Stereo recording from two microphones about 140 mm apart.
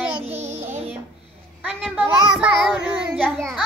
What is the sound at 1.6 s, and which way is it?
Child singing, 10° right (ahead or behind).